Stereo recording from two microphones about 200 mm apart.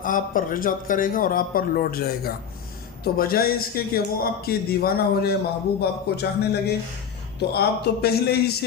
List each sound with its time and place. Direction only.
0.0 s a man's voice: 45° left (ahead or behind)